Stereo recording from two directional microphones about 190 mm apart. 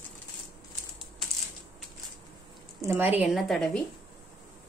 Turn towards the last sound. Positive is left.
turn(degrees=5)  # may be behind; listen again after turning